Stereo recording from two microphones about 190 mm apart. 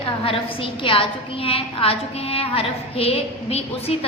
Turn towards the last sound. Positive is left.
turn(degrees=30)  # may be behind; listen again after turning